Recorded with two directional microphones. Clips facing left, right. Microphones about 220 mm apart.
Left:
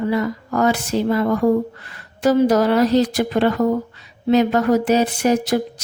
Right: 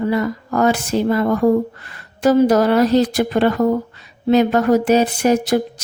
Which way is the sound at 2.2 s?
50° right (ahead or behind).